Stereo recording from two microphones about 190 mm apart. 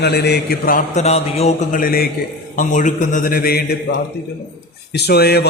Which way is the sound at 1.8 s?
50° left (ahead or behind).